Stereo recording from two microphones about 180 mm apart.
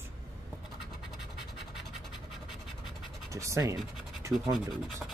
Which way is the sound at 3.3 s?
15° right (ahead or behind).